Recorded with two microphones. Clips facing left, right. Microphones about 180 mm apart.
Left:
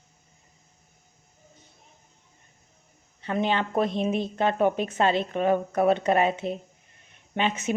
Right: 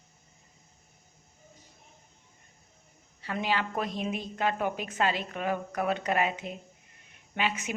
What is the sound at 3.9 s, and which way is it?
Speech, 10° right (ahead or behind).